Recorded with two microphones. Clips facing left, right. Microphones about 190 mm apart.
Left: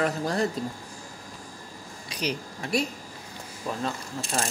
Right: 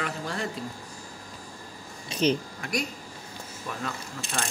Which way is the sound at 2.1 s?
25° right (ahead or behind).